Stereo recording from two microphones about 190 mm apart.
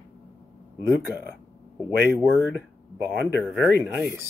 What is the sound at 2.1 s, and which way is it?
Speech, 5° right (ahead or behind).